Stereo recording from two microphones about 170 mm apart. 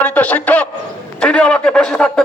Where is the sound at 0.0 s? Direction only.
10° left (ahead or behind).